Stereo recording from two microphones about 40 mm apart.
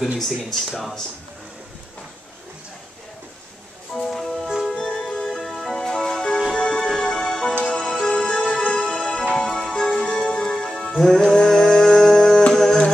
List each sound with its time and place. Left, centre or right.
3.9 s music: centre
4.7 s music: centre
5.4 s music: centre